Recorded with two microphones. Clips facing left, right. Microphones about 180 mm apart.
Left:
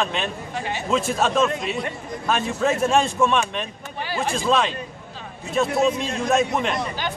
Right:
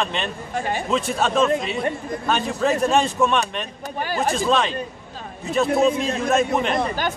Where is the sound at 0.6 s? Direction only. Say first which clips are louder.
Right 4 dB; 45° right (ahead or behind).